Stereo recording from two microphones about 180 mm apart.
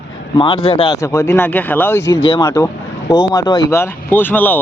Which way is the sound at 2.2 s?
25° left (ahead or behind).